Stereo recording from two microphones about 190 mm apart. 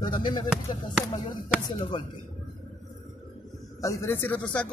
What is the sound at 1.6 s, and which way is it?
Speech, 25° left (ahead or behind).